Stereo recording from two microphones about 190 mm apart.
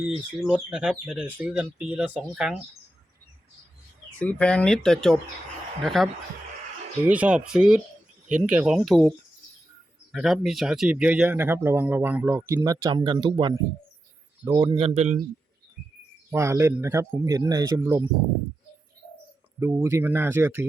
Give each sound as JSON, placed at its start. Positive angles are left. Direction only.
{"t": 0.0, "sound": "speech", "side_deg": -5}
{"t": 4.2, "sound": "speech", "side_deg": 5}
{"t": 7.1, "sound": "a man's voice", "side_deg": -5}
{"t": 14.9, "sound": "a man's voice", "side_deg": -35}
{"t": 16.3, "sound": "speech", "side_deg": -15}
{"t": 19.5, "sound": "speech", "side_deg": -15}